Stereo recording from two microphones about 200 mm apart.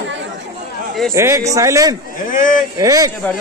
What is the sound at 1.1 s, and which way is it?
Speech, 15° right (ahead or behind).